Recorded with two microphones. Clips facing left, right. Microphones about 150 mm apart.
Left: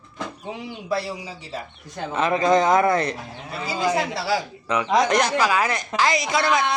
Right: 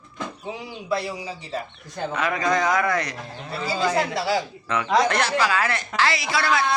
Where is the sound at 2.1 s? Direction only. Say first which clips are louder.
Left 5 dB; 25° left (ahead or behind).